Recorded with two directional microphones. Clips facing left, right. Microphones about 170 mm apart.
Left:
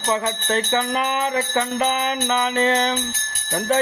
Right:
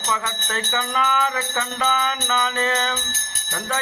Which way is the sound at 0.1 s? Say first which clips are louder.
Left 6 dB; 30° left (ahead or behind).